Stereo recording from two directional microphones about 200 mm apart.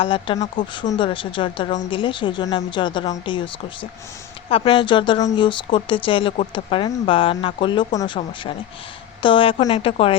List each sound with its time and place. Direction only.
0.0 s speech: 25° left (ahead or behind)